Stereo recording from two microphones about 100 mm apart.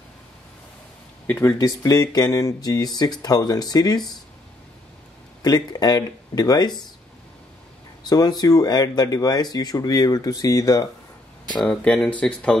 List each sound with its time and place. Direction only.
1.4 s speech: 35° left (ahead or behind)
5.4 s speech: 40° left (ahead or behind)
8.0 s speech: 45° left (ahead or behind)
11.6 s speech: 10° left (ahead or behind)